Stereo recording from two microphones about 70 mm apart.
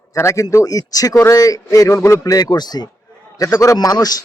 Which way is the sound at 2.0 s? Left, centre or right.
Left.